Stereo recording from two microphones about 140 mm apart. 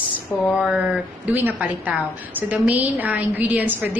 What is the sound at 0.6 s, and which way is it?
A woman's voice, 5° right (ahead or behind).